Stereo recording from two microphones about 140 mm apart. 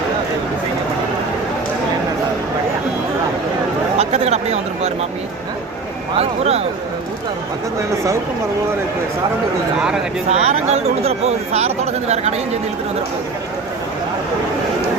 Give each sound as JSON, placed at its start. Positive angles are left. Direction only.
{"t": 3.9, "sound": "speech", "side_deg": -50}
{"t": 6.1, "sound": "speech", "side_deg": -50}
{"t": 10.2, "sound": "speech", "side_deg": -50}